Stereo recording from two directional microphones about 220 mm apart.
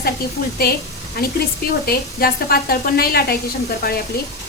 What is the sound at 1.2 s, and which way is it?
A woman's voice, 45° left (ahead or behind).